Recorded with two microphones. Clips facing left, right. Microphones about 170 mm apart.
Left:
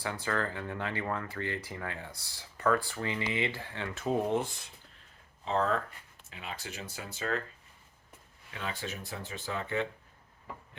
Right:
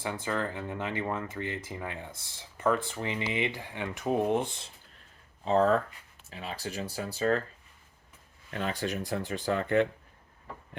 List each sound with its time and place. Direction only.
0.0 s speech: 20° right (ahead or behind)
5.5 s speech: 40° right (ahead or behind)
8.4 s speech: 50° right (ahead or behind)